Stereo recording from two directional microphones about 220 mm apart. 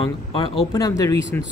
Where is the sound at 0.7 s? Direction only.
15° left (ahead or behind).